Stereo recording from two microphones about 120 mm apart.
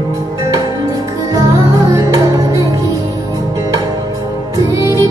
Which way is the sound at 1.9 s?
25° right (ahead or behind).